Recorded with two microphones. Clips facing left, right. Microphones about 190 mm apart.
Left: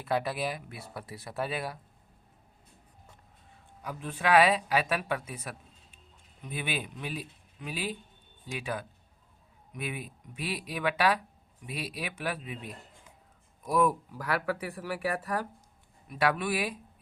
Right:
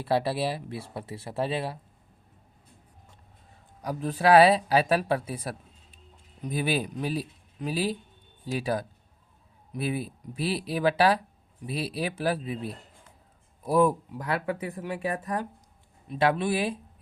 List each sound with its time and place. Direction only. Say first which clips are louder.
0.0 s speech: right 4 dB; 30° right (ahead or behind)
3.8 s speech: right 7 dB; 35° right (ahead or behind)